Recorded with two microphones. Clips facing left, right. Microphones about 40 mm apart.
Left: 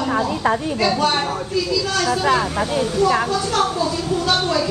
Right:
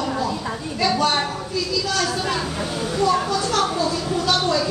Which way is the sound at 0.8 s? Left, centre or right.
Centre.